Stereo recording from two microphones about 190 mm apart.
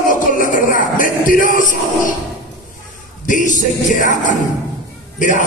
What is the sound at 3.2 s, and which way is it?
Speech, 45° left (ahead or behind).